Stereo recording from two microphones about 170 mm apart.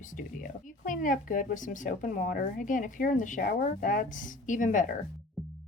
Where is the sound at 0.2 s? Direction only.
50° left (ahead or behind).